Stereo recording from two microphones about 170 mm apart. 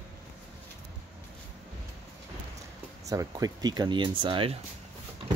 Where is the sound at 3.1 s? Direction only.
20° right (ahead or behind).